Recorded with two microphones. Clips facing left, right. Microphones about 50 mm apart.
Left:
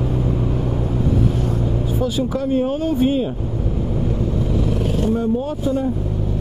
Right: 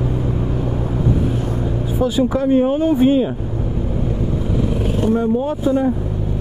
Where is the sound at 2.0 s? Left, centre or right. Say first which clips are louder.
Right 6 dB; centre.